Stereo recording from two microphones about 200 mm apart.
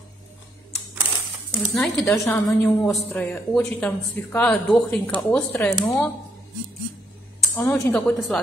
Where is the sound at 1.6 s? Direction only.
Centre (ahead or behind).